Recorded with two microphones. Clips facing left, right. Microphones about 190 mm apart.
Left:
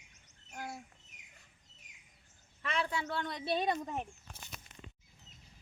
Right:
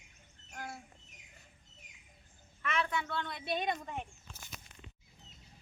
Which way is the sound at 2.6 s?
30° left (ahead or behind).